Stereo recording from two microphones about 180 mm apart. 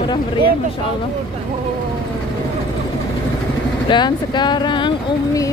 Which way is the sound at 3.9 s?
25° left (ahead or behind).